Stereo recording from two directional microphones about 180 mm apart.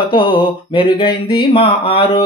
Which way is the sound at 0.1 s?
30° left (ahead or behind).